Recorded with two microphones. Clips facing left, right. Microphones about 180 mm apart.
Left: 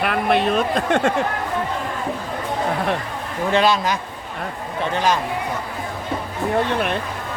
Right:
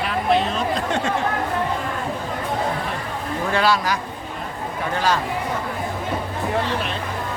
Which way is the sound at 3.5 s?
20° left (ahead or behind).